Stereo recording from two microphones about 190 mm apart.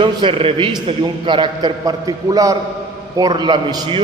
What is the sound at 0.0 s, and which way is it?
A man's voice, 25° right (ahead or behind).